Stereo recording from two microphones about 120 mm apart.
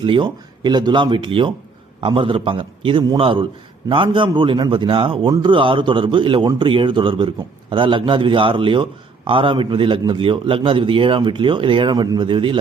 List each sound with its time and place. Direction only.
0.0 s a man's voice: 45° right (ahead or behind)